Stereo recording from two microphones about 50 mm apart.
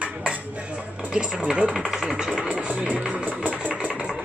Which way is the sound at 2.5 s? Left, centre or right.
Right.